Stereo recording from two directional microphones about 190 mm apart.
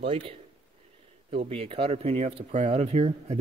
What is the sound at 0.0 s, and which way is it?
A man's voice, 30° right (ahead or behind).